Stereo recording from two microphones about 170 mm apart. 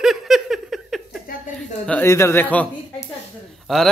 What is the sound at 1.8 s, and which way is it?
A man's voice, 10° left (ahead or behind).